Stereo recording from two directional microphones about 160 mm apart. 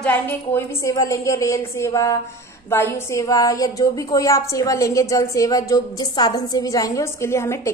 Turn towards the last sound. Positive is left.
turn(degrees=15)  # may be behind; listen again after turning